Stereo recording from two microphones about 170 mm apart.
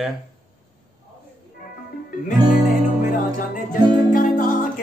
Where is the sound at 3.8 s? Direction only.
25° right (ahead or behind).